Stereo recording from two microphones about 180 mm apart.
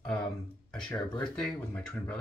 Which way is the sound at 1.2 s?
5° left (ahead or behind).